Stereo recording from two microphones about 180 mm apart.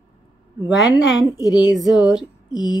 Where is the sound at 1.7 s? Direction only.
Centre (ahead or behind).